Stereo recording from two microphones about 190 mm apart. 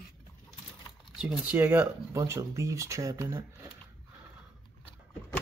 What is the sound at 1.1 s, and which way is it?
Speech, 5° right (ahead or behind).